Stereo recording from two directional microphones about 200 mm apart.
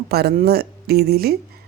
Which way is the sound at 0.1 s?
50° right (ahead or behind).